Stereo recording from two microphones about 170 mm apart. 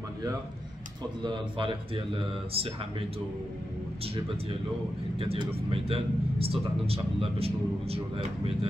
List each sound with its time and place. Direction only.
1.2 s a man's voice: 30° right (ahead or behind)
5.2 s a man's voice: 35° right (ahead or behind)